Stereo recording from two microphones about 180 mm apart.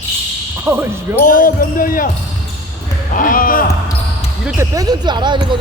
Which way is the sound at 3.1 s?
50° left (ahead or behind).